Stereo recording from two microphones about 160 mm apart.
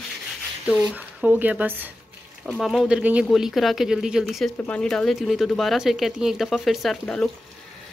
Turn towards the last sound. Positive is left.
turn(degrees=5)  # may be behind; listen again after turning